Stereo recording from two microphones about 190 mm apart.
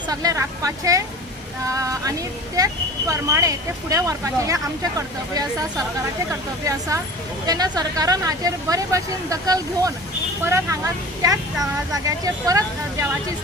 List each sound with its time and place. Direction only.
0.1 s speech: 20° right (ahead or behind)